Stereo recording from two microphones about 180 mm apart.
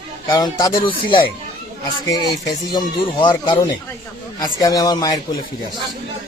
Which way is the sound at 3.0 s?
25° left (ahead or behind).